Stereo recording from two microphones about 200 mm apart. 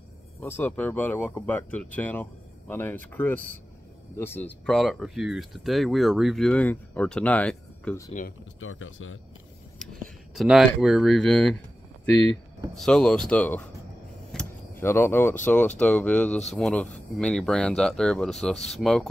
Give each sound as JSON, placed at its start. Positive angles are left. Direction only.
{"t": 0.4, "sound": "speech", "side_deg": 10}
{"t": 8.5, "sound": "speech", "side_deg": 85}
{"t": 10.3, "sound": "speech", "side_deg": 0}
{"t": 12.7, "sound": "speech", "side_deg": 5}
{"t": 14.3, "sound": "a sound", "side_deg": 10}
{"t": 15.4, "sound": "speech", "side_deg": 5}